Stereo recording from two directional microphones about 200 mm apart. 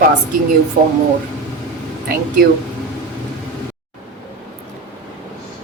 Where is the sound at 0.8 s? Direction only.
45° right (ahead or behind).